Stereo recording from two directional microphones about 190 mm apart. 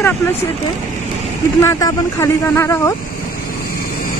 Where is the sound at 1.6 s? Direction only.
15° left (ahead or behind).